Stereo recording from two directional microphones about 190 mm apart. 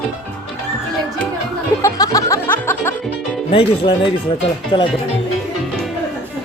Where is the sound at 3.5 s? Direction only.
30° left (ahead or behind).